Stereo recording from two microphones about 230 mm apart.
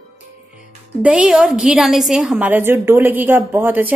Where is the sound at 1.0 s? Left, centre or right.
Centre.